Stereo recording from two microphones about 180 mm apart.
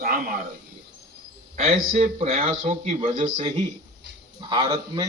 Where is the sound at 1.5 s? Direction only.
40° right (ahead or behind).